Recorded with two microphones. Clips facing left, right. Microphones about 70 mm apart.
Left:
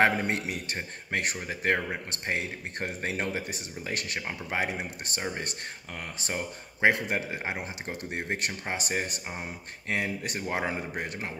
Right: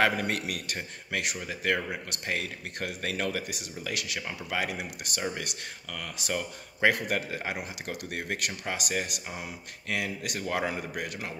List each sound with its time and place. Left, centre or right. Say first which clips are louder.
0.0 s speech: left 2 dB; left